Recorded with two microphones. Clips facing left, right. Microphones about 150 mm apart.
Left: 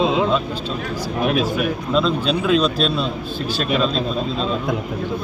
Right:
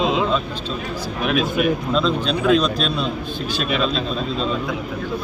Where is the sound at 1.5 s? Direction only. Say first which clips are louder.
Right 1 dB; centre (ahead or behind).